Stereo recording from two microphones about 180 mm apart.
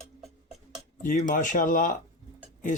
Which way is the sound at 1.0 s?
45° left (ahead or behind).